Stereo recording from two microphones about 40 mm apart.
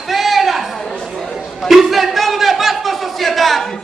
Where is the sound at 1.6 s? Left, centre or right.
Centre.